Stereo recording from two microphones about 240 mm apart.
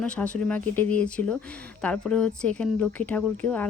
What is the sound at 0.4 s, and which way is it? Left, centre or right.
Speech, centre.